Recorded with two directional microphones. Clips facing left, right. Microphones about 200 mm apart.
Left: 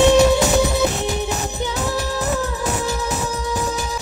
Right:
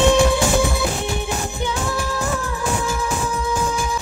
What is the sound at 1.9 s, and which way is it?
Music, 20° left (ahead or behind).